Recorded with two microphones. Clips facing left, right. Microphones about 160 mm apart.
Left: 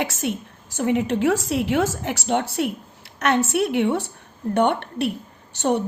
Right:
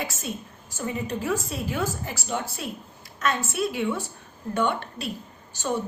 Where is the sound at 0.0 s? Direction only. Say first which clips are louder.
Left 7 dB; 75° left (ahead or behind).